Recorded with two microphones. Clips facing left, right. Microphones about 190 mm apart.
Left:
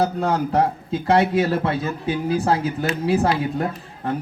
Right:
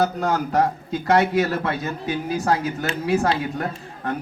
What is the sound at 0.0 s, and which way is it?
A man's voice, 25° left (ahead or behind).